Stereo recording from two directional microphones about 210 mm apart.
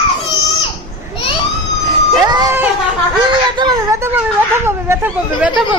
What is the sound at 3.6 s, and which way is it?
Speech, 15° right (ahead or behind).